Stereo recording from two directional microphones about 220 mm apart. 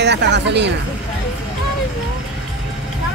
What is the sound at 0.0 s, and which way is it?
Speech, 50° right (ahead or behind).